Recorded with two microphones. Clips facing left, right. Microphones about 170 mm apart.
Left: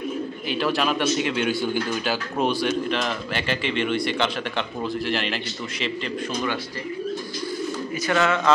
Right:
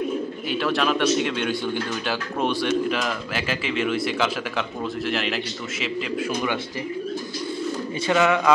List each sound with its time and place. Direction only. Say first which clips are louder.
0.5 s speech: right 1 dB; centre (ahead or behind)
8.1 s a man's voice: right 2 dB; 15° right (ahead or behind)